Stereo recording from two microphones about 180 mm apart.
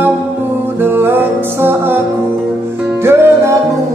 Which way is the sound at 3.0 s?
15° right (ahead or behind).